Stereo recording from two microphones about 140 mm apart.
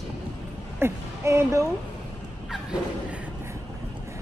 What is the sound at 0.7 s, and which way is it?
Speech, 20° right (ahead or behind).